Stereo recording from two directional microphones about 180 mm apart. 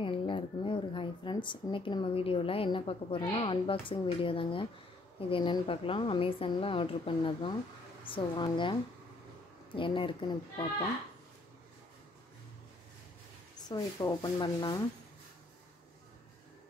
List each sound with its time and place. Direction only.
0.0 s a woman's voice: 30° left (ahead or behind)
9.8 s a woman's voice: 30° left (ahead or behind)
13.7 s a woman's voice: 20° left (ahead or behind)